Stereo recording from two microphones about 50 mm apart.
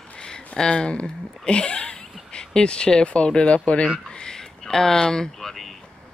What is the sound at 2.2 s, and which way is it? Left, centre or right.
Speech, centre.